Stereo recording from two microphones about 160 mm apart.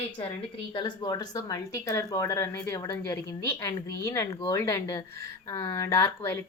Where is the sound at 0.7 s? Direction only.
25° left (ahead or behind).